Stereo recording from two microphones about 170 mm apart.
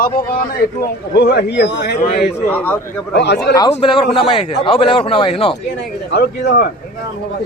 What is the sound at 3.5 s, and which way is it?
Speech, 20° left (ahead or behind).